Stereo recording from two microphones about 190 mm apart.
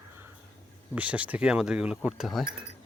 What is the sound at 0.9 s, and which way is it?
Speech, 5° right (ahead or behind).